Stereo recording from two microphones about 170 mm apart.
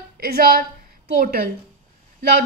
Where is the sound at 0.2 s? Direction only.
60° right (ahead or behind).